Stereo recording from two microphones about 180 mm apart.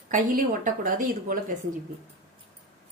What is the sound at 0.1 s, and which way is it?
A woman's voice, 50° right (ahead or behind).